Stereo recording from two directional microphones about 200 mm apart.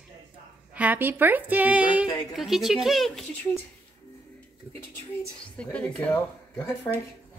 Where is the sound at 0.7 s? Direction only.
5° right (ahead or behind).